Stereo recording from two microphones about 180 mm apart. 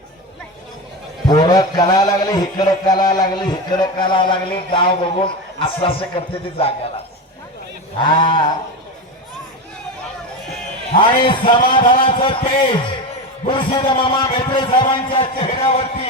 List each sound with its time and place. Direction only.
1.3 s a man's voice: 25° left (ahead or behind)
7.9 s a man's voice: 25° left (ahead or behind)
10.9 s a man's voice: 30° left (ahead or behind)